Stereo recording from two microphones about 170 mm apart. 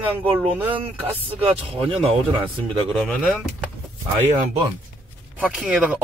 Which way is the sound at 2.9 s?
Centre (ahead or behind).